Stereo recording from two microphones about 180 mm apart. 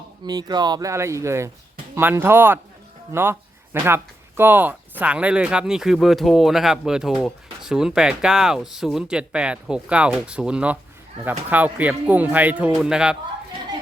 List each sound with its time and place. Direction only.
0.3 s speech: 20° right (ahead or behind); by 13.1 s 5° right (ahead or behind)